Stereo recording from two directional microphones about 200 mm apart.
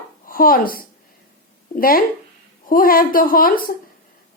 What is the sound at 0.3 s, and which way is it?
A woman's voice, 45° left (ahead or behind).